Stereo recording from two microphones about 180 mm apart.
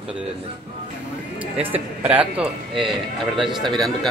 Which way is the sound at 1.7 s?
10° right (ahead or behind).